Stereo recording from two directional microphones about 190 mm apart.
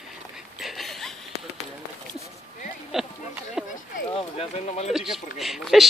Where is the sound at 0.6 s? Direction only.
Centre (ahead or behind).